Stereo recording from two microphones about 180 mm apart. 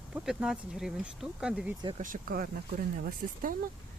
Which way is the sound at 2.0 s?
50° right (ahead or behind).